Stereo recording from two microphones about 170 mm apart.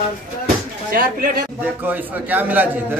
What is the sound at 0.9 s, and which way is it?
Speech, 55° right (ahead or behind).